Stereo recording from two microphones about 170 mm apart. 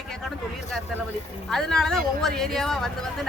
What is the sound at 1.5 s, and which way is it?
Speech, 5° left (ahead or behind).